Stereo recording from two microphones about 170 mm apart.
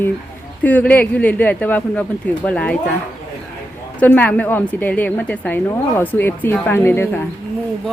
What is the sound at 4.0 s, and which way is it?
A woman's voice, 10° left (ahead or behind).